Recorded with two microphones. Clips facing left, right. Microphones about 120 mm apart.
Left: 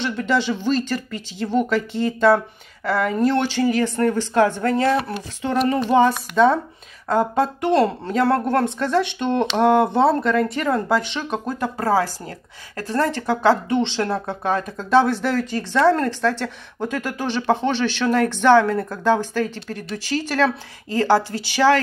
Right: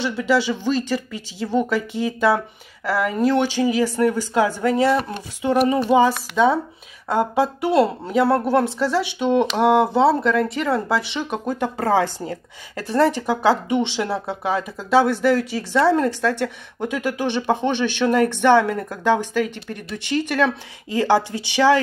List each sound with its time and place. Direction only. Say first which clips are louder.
0.0 s a woman's voice: right 1 dB; 10° right (ahead or behind)
20.9 s speech: even; 15° right (ahead or behind)